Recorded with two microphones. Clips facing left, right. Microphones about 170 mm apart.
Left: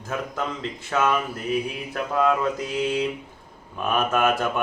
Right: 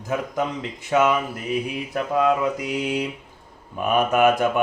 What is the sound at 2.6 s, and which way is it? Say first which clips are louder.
A man's voice: even; 15° right (ahead or behind).